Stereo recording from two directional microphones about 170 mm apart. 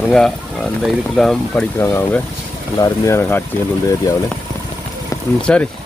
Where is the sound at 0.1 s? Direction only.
Centre (ahead or behind).